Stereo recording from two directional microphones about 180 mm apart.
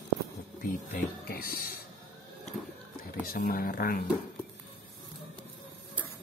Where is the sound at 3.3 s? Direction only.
55° left (ahead or behind).